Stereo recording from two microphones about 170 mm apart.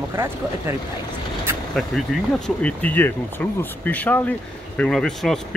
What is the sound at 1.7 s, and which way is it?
Speech, centre (ahead or behind).